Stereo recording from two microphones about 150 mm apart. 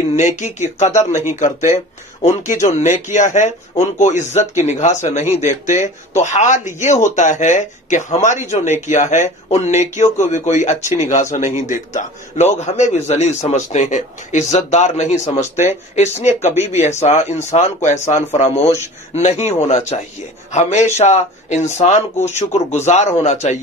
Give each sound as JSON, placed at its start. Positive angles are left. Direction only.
{"t": 0.4, "sound": "speech", "side_deg": 50}
{"t": 2.2, "sound": "speech", "side_deg": 55}